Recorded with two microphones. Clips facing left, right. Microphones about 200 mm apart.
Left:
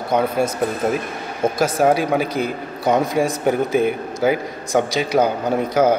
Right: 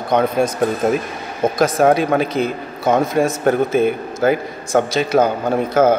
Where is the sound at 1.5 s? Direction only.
10° left (ahead or behind).